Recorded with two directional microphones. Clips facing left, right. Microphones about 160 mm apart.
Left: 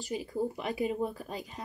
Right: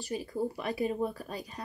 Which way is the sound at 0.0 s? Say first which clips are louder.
Even; 15° left (ahead or behind).